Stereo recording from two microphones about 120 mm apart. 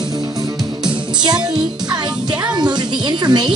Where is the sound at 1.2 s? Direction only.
35° right (ahead or behind).